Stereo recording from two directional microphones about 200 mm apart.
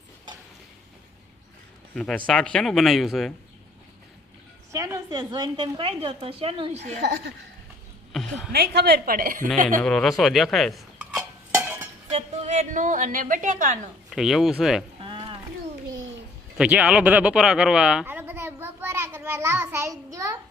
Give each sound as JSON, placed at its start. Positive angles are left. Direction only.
{"t": 2.0, "sound": "speech", "side_deg": 5}
{"t": 4.7, "sound": "a woman's voice", "side_deg": -15}
{"t": 8.1, "sound": "a woman's voice", "side_deg": 0}
{"t": 8.5, "sound": "a woman's voice", "side_deg": -55}
{"t": 9.8, "sound": "speech", "side_deg": 0}
{"t": 11.5, "sound": "stir", "side_deg": -10}
{"t": 12.1, "sound": "a woman's voice", "side_deg": -35}
{"t": 14.1, "sound": "speech", "side_deg": 0}
{"t": 15.0, "sound": "a sound", "side_deg": -25}
{"t": 16.6, "sound": "speech", "side_deg": -5}